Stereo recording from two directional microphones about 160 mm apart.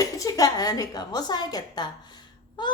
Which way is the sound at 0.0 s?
20° left (ahead or behind).